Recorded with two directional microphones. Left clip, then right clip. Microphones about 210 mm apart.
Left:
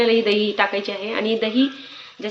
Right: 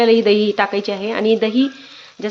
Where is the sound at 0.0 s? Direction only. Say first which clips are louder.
Right 4 dB; 55° right (ahead or behind).